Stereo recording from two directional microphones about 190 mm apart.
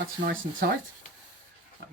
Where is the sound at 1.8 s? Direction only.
60° right (ahead or behind).